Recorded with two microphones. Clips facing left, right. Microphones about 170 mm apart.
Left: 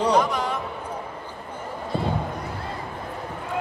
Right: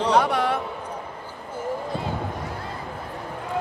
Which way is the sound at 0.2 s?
65° right (ahead or behind).